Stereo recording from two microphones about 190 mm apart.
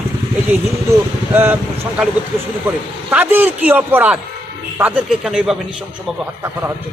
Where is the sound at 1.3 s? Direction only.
10° right (ahead or behind).